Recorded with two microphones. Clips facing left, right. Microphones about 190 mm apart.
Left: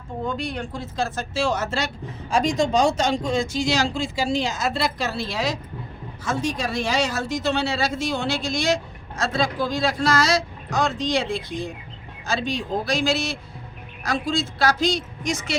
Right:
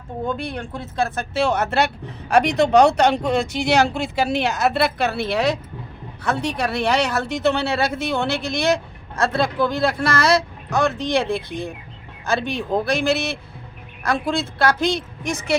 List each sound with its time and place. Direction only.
0.3 s speech: 55° right (ahead or behind)